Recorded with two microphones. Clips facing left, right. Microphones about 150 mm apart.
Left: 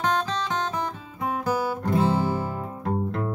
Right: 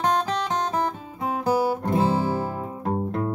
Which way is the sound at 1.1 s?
35° right (ahead or behind).